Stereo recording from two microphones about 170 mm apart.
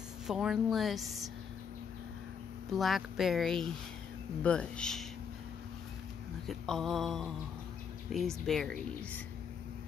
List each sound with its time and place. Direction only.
0.3 s speech: 5° right (ahead or behind)
2.7 s speech: centre (ahead or behind)
6.4 s speech: centre (ahead or behind)